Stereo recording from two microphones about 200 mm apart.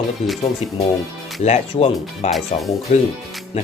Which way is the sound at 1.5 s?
35° left (ahead or behind).